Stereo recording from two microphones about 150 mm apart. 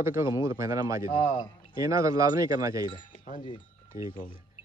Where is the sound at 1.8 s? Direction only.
20° right (ahead or behind).